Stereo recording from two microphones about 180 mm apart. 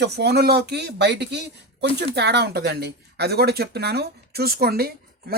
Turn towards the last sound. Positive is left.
turn(degrees=-60)  # may be behind; listen again after turning